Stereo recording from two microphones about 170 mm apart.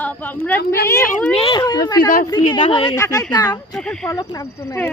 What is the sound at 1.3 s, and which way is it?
Speech, 35° left (ahead or behind).